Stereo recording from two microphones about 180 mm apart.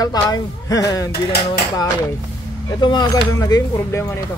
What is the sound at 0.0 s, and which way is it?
Speech, 20° left (ahead or behind).